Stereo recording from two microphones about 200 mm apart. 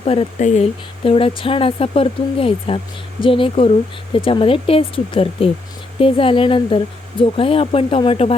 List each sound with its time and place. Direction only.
0.0 s speech: 30° left (ahead or behind)